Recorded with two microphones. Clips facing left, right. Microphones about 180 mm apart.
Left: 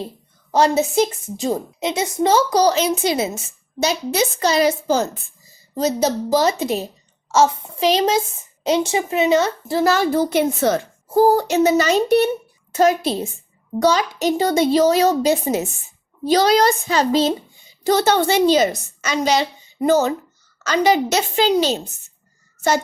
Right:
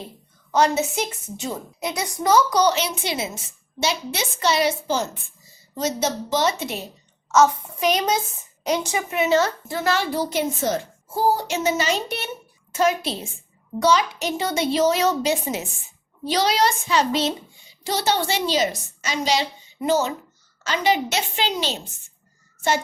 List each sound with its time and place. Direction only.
0.5 s a child's voice: 35° left (ahead or behind)
1.8 s a child's voice: 25° left (ahead or behind)
9.6 s a child's voice: 35° left (ahead or behind)
17.8 s a woman's voice: 50° left (ahead or behind)